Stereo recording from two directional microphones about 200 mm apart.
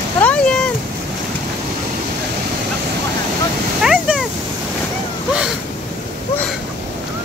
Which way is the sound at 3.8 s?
Centre (ahead or behind).